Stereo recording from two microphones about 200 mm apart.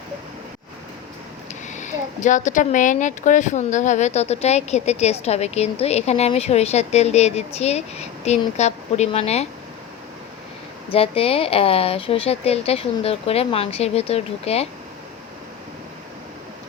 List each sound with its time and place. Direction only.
1.6 s speech: 40° left (ahead or behind)
10.9 s speech: 30° left (ahead or behind)